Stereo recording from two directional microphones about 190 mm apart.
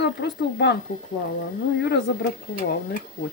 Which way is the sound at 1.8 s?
60° left (ahead or behind).